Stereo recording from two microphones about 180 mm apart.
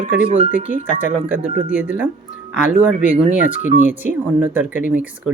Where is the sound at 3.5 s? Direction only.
45° left (ahead or behind).